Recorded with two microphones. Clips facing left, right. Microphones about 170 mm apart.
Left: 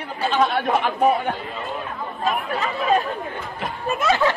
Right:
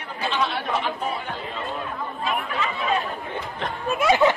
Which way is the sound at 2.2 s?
40° left (ahead or behind).